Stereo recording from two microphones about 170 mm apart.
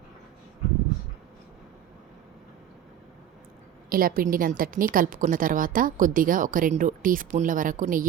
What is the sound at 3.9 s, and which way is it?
A woman's voice, 60° right (ahead or behind).